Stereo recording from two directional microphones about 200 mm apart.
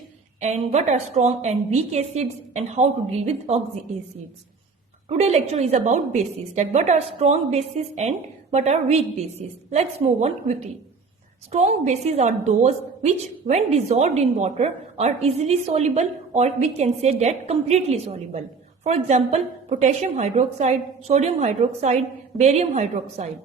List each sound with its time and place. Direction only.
0.3 s a woman's voice: 35° right (ahead or behind)
5.0 s a woman's voice: 30° right (ahead or behind)